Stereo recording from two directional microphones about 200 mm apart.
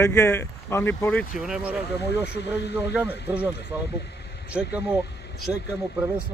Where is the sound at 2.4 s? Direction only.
60° left (ahead or behind).